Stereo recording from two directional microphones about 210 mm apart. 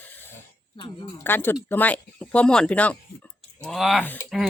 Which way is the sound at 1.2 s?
10° left (ahead or behind).